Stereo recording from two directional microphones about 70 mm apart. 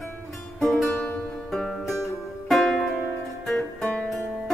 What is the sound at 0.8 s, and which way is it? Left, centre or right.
Music, left.